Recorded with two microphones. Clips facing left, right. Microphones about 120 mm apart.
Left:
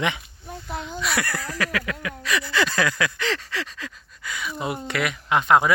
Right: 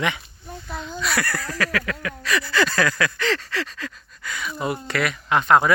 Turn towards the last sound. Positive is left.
turn(degrees=10)  # may be behind; listen again after turning